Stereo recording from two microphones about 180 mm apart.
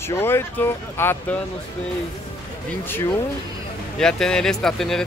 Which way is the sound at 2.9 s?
10° left (ahead or behind).